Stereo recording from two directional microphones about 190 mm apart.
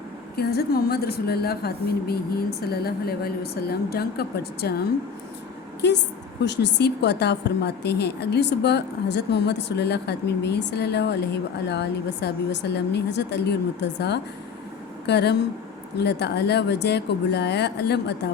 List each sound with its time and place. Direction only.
0.3 s a woman's voice: 55° left (ahead or behind)
5.8 s a woman's voice: 65° left (ahead or behind)